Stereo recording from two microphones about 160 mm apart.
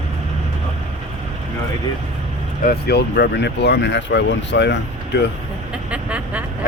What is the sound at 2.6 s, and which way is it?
Speech, 85° left.